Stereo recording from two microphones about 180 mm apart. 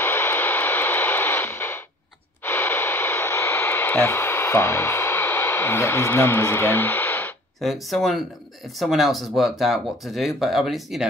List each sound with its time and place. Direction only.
0.0 s vehicle: 10° left (ahead or behind)
2.4 s radio: 10° left (ahead or behind)
7.6 s speech: centre (ahead or behind)